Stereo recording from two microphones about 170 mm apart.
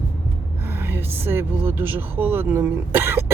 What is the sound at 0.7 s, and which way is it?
Speech, 15° right (ahead or behind).